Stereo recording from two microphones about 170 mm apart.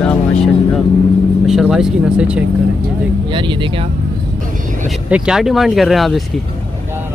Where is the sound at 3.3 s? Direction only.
30° right (ahead or behind).